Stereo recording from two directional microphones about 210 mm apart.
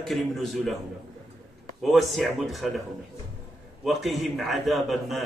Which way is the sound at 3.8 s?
Centre (ahead or behind).